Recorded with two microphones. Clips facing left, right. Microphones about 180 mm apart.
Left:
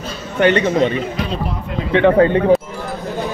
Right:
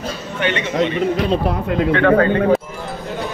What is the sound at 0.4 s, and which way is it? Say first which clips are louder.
Speech: left 6 dB; 40° left (ahead or behind).